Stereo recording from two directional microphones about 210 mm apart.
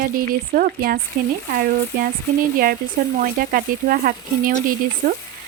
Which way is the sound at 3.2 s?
45° right (ahead or behind).